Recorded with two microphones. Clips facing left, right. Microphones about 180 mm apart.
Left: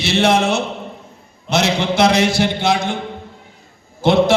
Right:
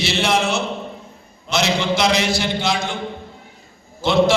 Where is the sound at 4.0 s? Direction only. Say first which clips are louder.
Left 2 dB; 55° left (ahead or behind).